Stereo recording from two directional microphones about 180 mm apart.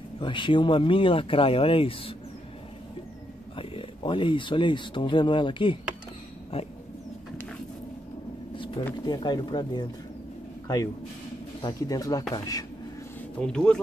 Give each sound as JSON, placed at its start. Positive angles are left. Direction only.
{"t": 0.2, "sound": "speech", "side_deg": 25}
{"t": 3.5, "sound": "speech", "side_deg": 30}
{"t": 6.5, "sound": "a sound", "side_deg": 30}
{"t": 8.9, "sound": "speech", "side_deg": 25}
{"t": 11.6, "sound": "speech", "side_deg": 20}
{"t": 13.4, "sound": "speech", "side_deg": 5}